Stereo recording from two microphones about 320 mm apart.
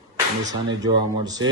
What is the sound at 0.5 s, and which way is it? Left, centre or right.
Speech, centre.